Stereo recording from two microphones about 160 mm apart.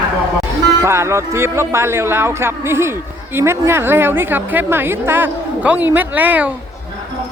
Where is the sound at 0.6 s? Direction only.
20° right (ahead or behind).